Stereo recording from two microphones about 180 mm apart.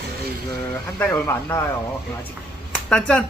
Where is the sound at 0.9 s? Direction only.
15° left (ahead or behind).